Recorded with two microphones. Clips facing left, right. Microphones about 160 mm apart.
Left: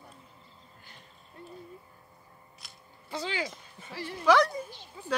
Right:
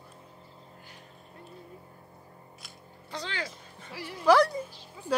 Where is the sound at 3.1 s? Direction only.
10° left (ahead or behind).